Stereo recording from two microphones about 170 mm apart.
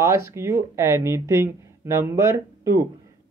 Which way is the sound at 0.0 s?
15° right (ahead or behind).